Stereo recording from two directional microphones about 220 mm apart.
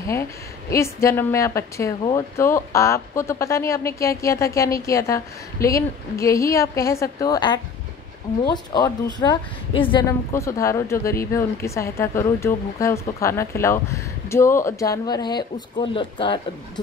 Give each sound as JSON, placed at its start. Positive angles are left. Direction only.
{"t": 0.0, "sound": "a woman's voice", "side_deg": 15}